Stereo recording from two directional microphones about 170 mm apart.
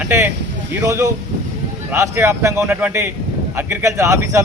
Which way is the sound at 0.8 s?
15° right (ahead or behind).